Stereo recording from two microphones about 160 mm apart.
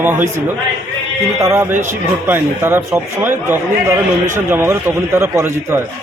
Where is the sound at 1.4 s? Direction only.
15° right (ahead or behind).